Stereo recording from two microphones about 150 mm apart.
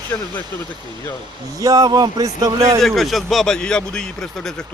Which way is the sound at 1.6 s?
25° right (ahead or behind).